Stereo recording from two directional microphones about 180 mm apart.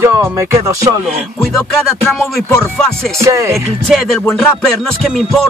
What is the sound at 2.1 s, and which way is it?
Music, centre (ahead or behind).